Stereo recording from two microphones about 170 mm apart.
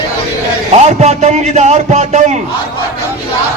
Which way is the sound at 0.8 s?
40° right (ahead or behind).